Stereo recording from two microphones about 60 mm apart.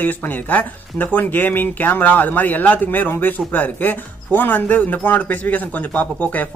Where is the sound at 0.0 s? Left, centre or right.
Left.